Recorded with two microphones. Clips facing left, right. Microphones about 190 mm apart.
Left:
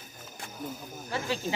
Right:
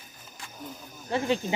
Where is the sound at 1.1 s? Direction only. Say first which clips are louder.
Right 6 dB; 20° right (ahead or behind).